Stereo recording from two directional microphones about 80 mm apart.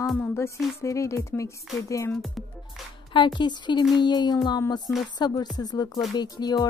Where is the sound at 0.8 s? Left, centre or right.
Left.